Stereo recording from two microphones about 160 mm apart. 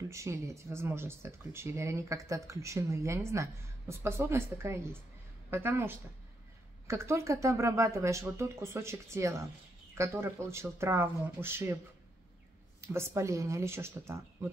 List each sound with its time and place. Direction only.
0.1 s speech: 20° right (ahead or behind)
12.8 s speech: 15° right (ahead or behind)